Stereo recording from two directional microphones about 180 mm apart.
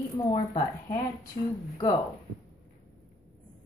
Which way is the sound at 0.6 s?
20° left (ahead or behind).